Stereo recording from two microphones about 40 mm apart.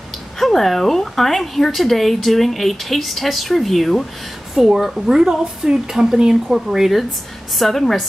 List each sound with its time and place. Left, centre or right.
0.4 s speech: centre
4.6 s speech: centre
7.5 s speech: centre